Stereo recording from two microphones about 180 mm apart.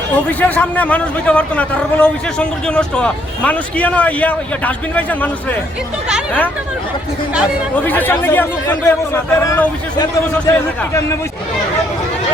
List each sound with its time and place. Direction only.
0.3 s a man's voice: 10° left (ahead or behind)
7.9 s a man's voice: 10° left (ahead or behind)